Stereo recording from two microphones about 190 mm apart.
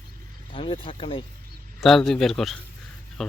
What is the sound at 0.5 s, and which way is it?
Speech, 30° left (ahead or behind).